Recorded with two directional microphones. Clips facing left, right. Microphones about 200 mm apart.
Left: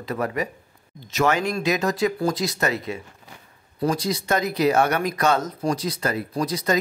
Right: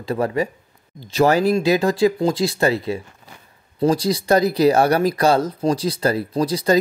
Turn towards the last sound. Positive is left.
turn(degrees=-30)  # may be behind; listen again after turning